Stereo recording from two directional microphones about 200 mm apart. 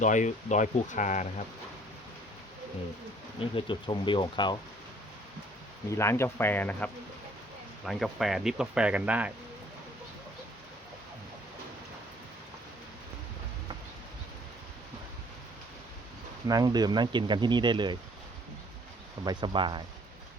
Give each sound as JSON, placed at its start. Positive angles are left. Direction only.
{"t": 0.0, "sound": "speech", "side_deg": 40}
{"t": 3.5, "sound": "speech", "side_deg": 25}
{"t": 6.0, "sound": "speech", "side_deg": 15}
{"t": 16.5, "sound": "speech", "side_deg": -20}
{"t": 19.2, "sound": "speech", "side_deg": -20}